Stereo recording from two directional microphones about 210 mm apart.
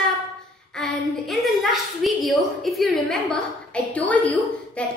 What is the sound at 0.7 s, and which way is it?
A woman's voice, centre (ahead or behind).